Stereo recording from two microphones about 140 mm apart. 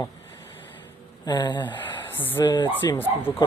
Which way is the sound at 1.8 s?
15° left (ahead or behind).